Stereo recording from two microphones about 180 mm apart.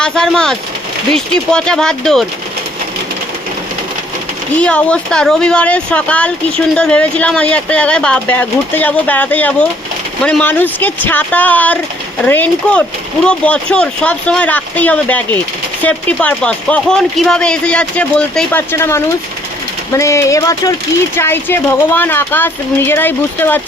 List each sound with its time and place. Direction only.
0.0 s speech: 5° left (ahead or behind)
4.5 s speech: 5° left (ahead or behind)